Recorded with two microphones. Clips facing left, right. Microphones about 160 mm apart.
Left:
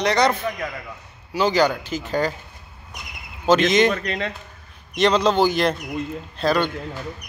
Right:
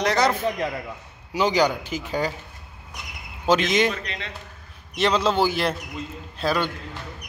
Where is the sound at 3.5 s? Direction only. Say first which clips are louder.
Left 3 dB; 10° right (ahead or behind).